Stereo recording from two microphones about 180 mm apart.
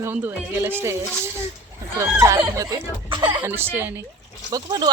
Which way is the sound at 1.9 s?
20° right (ahead or behind).